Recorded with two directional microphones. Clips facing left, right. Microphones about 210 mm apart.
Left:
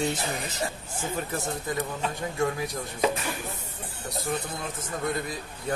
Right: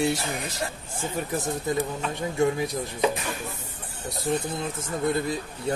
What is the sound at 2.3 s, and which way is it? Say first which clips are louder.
Speech: right 6 dB; 25° right (ahead or behind).